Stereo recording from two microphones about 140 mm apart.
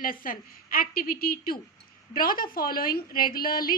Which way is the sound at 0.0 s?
85° left.